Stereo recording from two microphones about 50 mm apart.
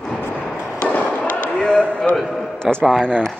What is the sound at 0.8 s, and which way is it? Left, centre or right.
Fireworks, left.